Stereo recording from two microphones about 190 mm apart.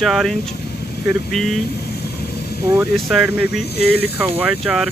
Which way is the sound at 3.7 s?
55° left (ahead or behind).